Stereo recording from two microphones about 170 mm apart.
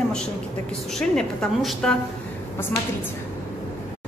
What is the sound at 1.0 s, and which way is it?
A woman's voice, 5° left (ahead or behind).